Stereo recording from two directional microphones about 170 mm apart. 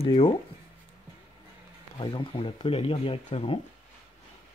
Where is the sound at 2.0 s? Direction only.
30° left (ahead or behind).